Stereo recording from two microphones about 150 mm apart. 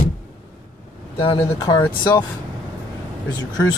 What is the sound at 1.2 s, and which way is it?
Speech, 30° left (ahead or behind).